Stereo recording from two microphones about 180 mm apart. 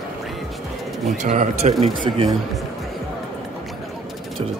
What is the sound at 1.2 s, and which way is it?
A man's voice, 40° right (ahead or behind).